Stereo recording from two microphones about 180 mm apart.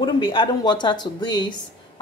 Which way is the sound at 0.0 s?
25° left (ahead or behind).